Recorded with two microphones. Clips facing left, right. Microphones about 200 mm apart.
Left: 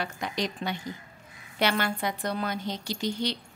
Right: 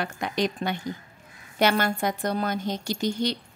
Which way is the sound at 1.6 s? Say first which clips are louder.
Right 4 dB; 45° right (ahead or behind).